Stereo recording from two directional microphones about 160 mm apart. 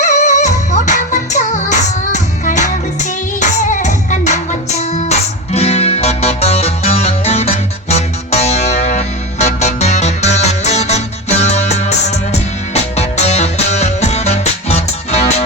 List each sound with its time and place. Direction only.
0.0 s music: 45° left (ahead or behind)